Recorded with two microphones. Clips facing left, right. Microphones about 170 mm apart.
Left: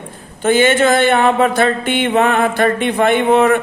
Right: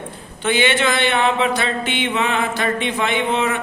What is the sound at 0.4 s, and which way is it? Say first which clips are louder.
Mantra: left 6 dB; 45° left (ahead or behind).